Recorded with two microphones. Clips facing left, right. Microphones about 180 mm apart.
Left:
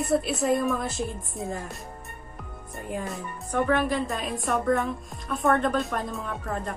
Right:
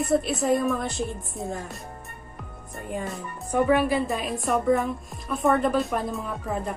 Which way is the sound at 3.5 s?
10° right (ahead or behind).